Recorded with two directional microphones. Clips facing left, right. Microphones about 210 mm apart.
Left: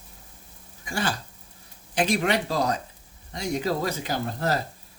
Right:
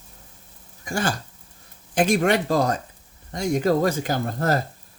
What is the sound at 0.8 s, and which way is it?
Speech, 45° right (ahead or behind).